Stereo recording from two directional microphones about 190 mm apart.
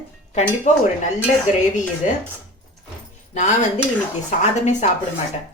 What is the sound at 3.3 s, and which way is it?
Speech, 40° left (ahead or behind).